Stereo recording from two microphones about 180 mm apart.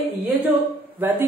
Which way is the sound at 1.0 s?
10° right (ahead or behind).